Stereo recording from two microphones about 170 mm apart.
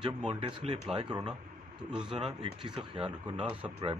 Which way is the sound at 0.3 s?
40° right (ahead or behind).